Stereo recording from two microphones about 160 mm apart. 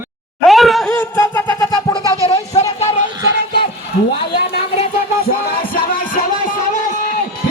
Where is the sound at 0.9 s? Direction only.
15° left (ahead or behind).